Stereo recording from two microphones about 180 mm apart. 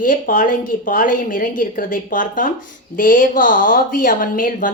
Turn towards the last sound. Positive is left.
turn(degrees=50)  # may be behind; listen again after turning